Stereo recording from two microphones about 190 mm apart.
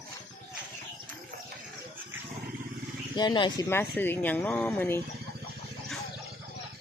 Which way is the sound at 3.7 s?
10° left (ahead or behind).